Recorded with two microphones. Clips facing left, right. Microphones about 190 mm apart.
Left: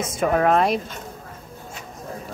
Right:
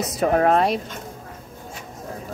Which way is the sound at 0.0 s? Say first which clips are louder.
Right 1 dB; 35° right (ahead or behind).